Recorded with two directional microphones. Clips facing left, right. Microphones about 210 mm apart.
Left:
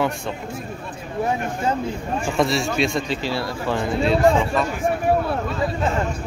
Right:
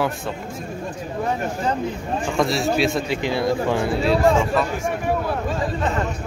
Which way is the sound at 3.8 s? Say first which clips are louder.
Right 1 dB; 5° right (ahead or behind).